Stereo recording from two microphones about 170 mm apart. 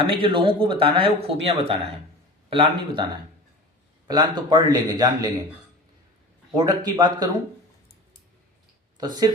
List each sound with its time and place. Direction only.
0.0 s a man's voice: 30° right (ahead or behind)
6.5 s a man's voice: 20° right (ahead or behind)
9.0 s speech: 25° right (ahead or behind)